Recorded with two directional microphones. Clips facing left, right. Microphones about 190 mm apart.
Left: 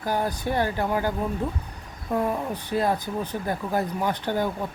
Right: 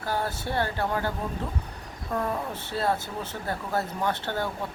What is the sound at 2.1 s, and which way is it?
Speech, 15° left (ahead or behind).